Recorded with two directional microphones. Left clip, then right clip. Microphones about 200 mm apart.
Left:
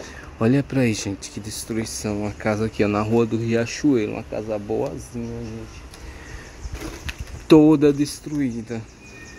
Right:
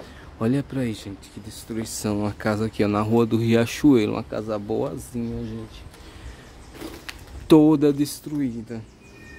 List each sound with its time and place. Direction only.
0.4 s speech: 5° left (ahead or behind); by 1.6 s 25° left (ahead or behind)
2.0 s a man's voice: 15° right (ahead or behind)
7.4 s speech: 5° right (ahead or behind)